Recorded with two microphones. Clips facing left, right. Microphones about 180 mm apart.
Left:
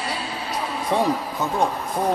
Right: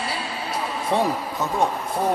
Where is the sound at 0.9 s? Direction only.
Centre (ahead or behind).